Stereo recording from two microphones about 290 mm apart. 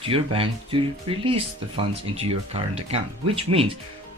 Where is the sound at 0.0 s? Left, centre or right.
Centre.